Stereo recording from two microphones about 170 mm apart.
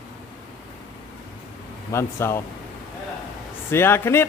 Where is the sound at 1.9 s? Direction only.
15° left (ahead or behind).